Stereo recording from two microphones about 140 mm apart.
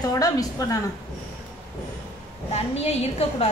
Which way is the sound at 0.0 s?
25° left (ahead or behind).